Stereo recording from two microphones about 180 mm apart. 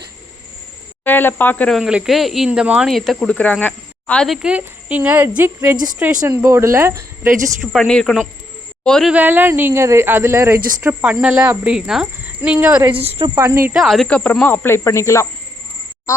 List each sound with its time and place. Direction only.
1.0 s speech: 10° left (ahead or behind); by 7.3 s 15° right (ahead or behind)
7.6 s speech: centre (ahead or behind)
9.1 s speech: 10° right (ahead or behind)
13.0 s speech: 30° right (ahead or behind)
13.3 s speech: 15° right (ahead or behind)
13.7 s speech: centre (ahead or behind)